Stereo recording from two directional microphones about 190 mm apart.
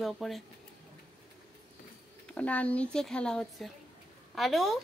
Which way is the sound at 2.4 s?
5° left (ahead or behind).